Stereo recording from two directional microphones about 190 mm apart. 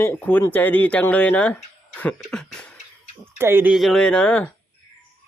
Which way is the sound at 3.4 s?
10° right (ahead or behind).